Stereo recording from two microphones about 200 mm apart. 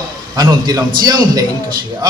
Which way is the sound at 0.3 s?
20° right (ahead or behind).